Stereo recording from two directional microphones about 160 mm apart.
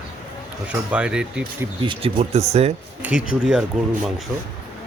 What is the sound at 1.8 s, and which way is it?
Speech, 35° right (ahead or behind).